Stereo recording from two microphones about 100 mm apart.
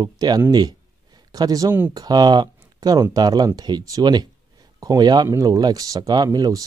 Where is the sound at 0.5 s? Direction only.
45° right (ahead or behind).